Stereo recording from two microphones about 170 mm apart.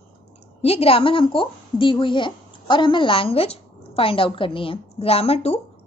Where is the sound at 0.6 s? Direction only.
35° left (ahead or behind).